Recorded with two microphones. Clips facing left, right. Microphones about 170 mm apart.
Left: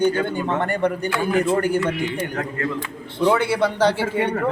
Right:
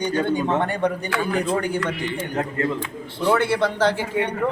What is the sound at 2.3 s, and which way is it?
Speech, 25° right (ahead or behind).